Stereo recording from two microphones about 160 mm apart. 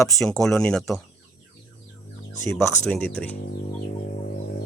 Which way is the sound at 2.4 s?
15° left (ahead or behind).